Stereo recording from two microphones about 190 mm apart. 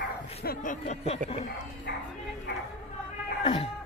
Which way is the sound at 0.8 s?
35° left (ahead or behind).